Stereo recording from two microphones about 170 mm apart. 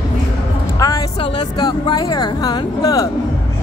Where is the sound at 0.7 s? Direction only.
20° left (ahead or behind).